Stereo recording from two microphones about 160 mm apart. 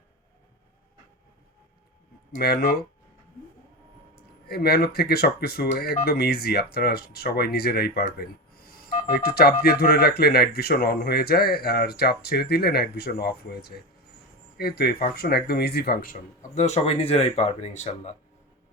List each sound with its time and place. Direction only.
2.4 s speech: 80° left
4.1 s speech: 75° left (ahead or behind)
8.0 s a sound: 70° left (ahead or behind)
8.9 s telephone dialing: 45° left (ahead or behind)
9.1 s speech: 75° left (ahead or behind); by 18.1 s 45° left (ahead or behind)